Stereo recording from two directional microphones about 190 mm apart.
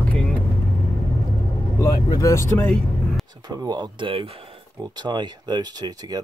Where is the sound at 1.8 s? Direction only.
15° left (ahead or behind).